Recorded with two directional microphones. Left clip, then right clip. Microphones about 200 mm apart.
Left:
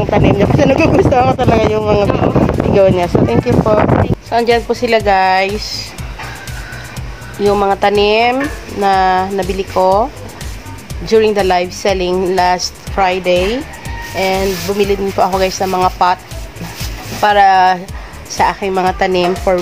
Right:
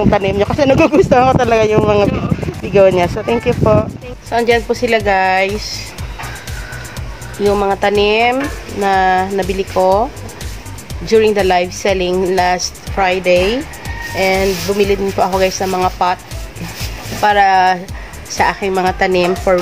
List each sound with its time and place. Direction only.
0.1 s speech: 15° right (ahead or behind)
4.3 s a woman's voice: 15° left (ahead or behind)
7.3 s a woman's voice: 20° left (ahead or behind)
11.1 s a woman's voice: 10° left (ahead or behind)
17.2 s a woman's voice: 15° left (ahead or behind)